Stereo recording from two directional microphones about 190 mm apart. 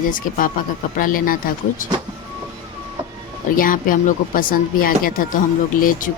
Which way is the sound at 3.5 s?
45° left (ahead or behind).